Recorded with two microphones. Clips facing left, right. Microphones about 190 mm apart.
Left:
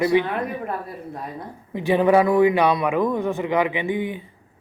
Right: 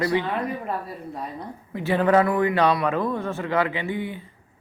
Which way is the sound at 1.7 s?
15° left (ahead or behind).